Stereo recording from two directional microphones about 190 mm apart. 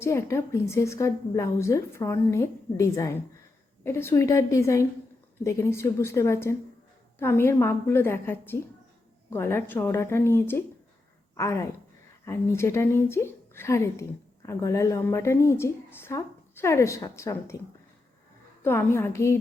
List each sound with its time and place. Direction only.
0.0 s a woman's voice: 15° left (ahead or behind)
18.6 s a woman's voice: 15° left (ahead or behind)